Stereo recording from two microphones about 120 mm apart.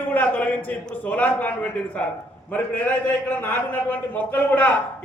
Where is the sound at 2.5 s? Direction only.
10° left (ahead or behind).